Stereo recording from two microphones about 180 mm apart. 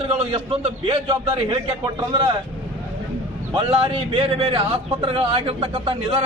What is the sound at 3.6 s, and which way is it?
Speech, 30° right (ahead or behind).